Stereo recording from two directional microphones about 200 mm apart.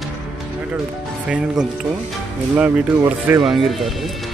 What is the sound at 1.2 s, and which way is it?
Speech, 5° right (ahead or behind).